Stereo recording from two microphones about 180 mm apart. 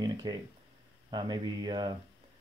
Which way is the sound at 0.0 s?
20° right (ahead or behind).